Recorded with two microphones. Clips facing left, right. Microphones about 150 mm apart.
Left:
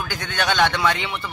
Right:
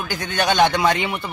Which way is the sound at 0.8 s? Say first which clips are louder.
Right 3 dB; 45° right (ahead or behind).